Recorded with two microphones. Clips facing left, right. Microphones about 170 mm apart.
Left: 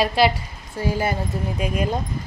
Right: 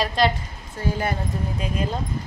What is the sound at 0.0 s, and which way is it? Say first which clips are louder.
Speech: left 3 dB; 5° left (ahead or behind).